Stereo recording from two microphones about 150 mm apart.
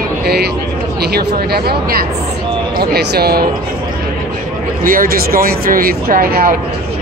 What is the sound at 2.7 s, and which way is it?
Speech, 90° right.